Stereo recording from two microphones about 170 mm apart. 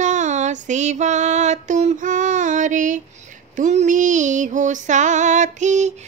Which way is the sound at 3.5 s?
45° right (ahead or behind).